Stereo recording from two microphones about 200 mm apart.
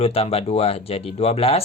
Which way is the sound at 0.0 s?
30° left (ahead or behind).